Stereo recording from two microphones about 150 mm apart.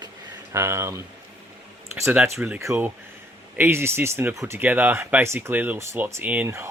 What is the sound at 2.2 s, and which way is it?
Speech, 15° right (ahead or behind).